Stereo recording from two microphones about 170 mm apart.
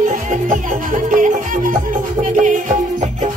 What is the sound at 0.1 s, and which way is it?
Music, 50° right (ahead or behind).